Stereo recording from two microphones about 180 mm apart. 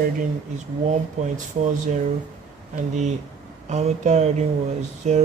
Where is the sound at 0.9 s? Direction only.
45° right (ahead or behind).